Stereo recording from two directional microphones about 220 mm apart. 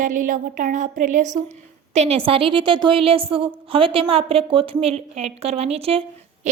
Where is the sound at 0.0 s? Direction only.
35° right (ahead or behind).